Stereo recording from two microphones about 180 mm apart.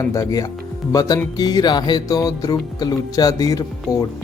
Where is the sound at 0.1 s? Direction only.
15° left (ahead or behind).